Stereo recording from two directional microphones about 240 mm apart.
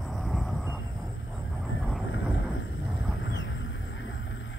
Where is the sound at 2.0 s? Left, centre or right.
Left.